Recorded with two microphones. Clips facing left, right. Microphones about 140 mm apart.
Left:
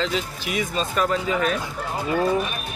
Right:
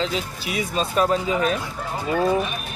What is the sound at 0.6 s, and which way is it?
Speech, 35° right (ahead or behind).